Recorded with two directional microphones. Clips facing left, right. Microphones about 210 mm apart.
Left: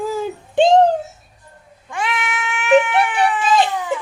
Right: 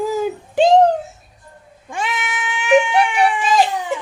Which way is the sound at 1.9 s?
25° right (ahead or behind).